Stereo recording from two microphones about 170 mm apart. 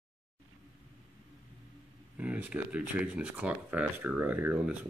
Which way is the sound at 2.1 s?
10° right (ahead or behind).